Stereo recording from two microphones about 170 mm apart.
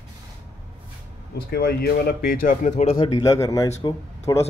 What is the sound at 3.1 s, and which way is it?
Speech, 20° left (ahead or behind).